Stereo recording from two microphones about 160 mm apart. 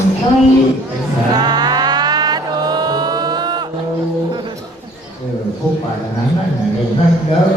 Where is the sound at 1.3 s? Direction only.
25° right (ahead or behind).